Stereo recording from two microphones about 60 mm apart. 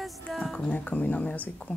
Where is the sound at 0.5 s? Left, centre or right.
Left.